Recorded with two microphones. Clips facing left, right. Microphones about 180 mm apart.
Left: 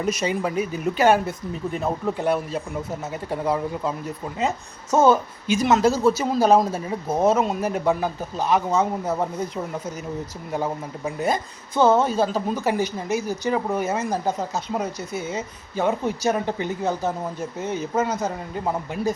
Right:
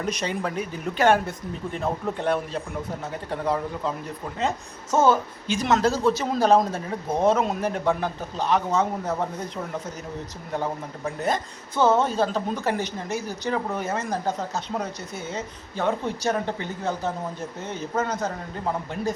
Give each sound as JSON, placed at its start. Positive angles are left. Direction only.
{"t": 0.0, "sound": "a woman's voice", "side_deg": 5}
{"t": 10.5, "sound": "a woman's voice", "side_deg": 10}